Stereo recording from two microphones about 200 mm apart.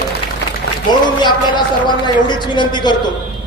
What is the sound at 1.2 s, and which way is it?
Speech, 20° left (ahead or behind).